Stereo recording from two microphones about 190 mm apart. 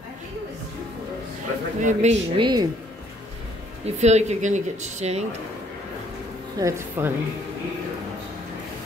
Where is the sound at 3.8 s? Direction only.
35° right (ahead or behind).